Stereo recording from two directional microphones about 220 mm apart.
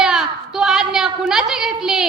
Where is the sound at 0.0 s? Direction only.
Centre (ahead or behind).